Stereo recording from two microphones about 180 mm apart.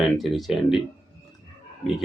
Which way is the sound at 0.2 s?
Centre (ahead or behind).